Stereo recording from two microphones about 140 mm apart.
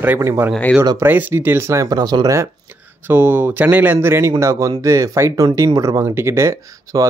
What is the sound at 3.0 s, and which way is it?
Speech, 15° right (ahead or behind).